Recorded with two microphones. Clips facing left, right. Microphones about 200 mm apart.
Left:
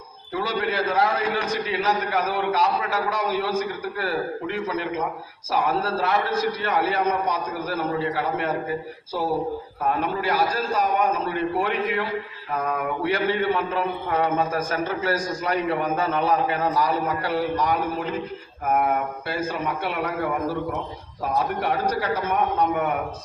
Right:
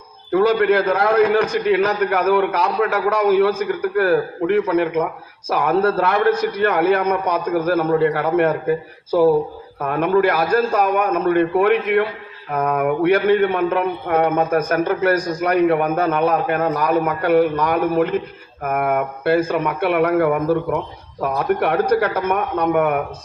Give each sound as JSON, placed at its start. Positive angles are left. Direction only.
{"t": 0.3, "sound": "a man's voice", "side_deg": -55}
{"t": 9.8, "sound": "a man's voice", "side_deg": -55}